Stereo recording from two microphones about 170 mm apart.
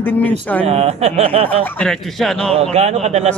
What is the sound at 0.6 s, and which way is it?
Speech, 35° right (ahead or behind).